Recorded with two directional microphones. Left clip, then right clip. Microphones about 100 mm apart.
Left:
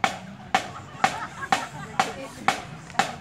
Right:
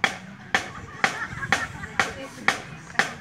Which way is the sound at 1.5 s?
25° right (ahead or behind).